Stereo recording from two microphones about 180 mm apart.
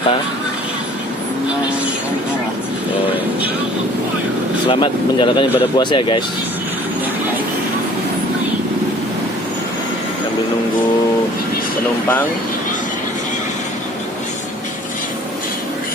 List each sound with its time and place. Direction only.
4.7 s speech: 25° left (ahead or behind)